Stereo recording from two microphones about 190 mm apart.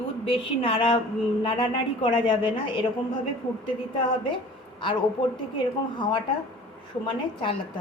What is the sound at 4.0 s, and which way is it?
Speech, 25° left (ahead or behind).